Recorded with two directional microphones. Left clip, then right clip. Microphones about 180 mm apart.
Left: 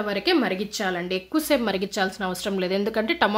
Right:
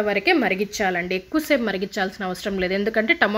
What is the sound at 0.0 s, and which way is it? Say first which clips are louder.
A woman's voice: right 3 dB; 10° right (ahead or behind).